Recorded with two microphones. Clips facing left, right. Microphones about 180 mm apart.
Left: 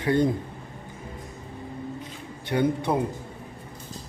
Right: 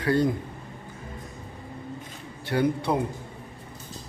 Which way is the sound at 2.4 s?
20° left (ahead or behind).